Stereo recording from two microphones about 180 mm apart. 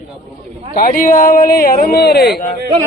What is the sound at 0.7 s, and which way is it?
Speech, 50° left (ahead or behind).